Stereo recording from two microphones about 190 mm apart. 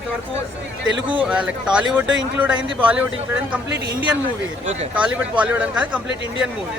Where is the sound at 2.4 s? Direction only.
10° right (ahead or behind).